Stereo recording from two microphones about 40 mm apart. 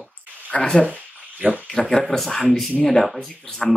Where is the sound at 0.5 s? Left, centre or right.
Left.